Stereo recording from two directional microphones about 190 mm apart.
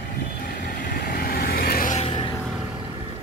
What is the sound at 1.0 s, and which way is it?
Vehicle, 55° left (ahead or behind).